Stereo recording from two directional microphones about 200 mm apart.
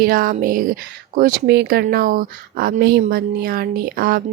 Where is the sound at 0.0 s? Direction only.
45° right (ahead or behind).